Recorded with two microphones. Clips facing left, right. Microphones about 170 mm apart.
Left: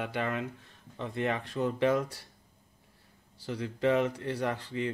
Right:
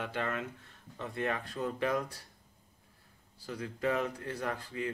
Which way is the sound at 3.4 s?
25° left (ahead or behind).